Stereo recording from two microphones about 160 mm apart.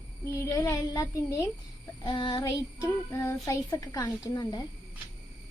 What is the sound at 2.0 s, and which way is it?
A child's voice, 30° left (ahead or behind).